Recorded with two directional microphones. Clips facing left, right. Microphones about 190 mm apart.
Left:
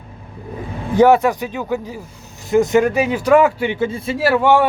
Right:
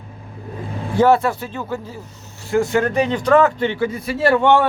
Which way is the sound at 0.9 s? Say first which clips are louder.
Left 3 dB; 15° left (ahead or behind).